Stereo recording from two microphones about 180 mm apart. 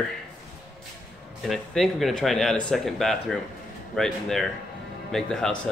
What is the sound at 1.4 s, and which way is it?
Speech, centre (ahead or behind).